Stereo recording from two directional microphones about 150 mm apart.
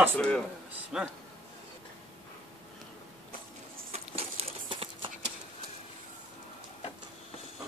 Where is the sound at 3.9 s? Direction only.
40° right (ahead or behind).